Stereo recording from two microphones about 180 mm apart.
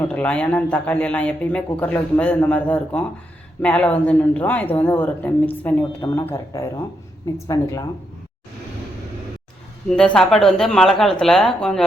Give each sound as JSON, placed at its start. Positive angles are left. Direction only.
{"t": 0.0, "sound": "a man's voice", "side_deg": 10}
{"t": 9.9, "sound": "speech", "side_deg": 5}